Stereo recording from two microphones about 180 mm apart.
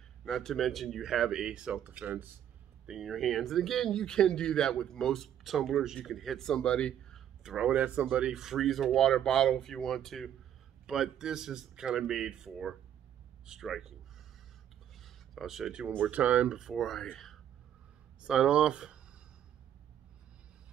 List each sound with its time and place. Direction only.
0.2 s speech: centre (ahead or behind)
15.0 s speech: centre (ahead or behind)